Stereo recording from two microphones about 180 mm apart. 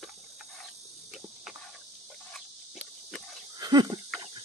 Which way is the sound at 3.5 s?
20° right (ahead or behind).